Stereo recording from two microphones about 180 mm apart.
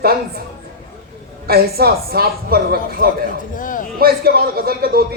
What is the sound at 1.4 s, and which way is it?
Speech, 60° right (ahead or behind).